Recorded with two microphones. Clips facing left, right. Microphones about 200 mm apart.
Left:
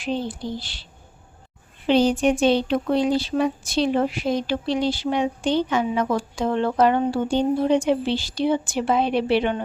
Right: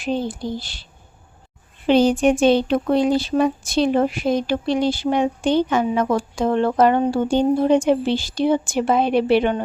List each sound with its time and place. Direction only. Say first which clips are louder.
0.0 s speech: right 3 dB; 45° right (ahead or behind)
1.9 s speech: right 3 dB; 50° right (ahead or behind)